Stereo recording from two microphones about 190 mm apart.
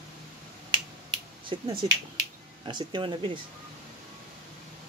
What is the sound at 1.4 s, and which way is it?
Speech, 20° right (ahead or behind).